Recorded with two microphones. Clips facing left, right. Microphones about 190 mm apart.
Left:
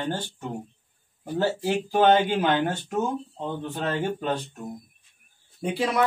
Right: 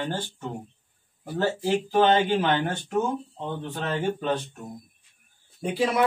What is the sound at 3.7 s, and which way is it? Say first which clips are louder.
Speech: right 1 dB; 10° left (ahead or behind).